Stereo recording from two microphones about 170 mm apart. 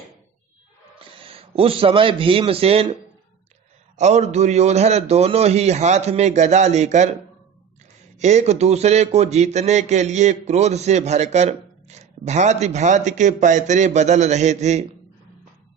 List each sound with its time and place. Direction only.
0.9 s a man's voice: 35° right (ahead or behind)
8.2 s a man's voice: 40° right (ahead or behind)